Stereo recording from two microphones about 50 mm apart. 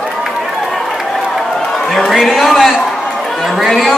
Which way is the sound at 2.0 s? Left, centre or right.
Centre.